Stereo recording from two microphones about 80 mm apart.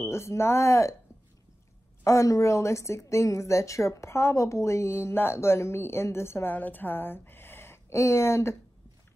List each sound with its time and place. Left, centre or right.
0.0 s a woman's voice: left
2.0 s a woman's voice: left
6.5 s speech: left